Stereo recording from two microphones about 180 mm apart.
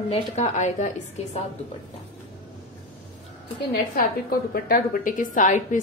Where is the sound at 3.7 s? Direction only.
55° left (ahead or behind).